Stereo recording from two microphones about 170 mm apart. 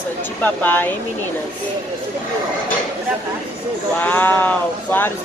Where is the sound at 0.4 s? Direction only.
10° left (ahead or behind).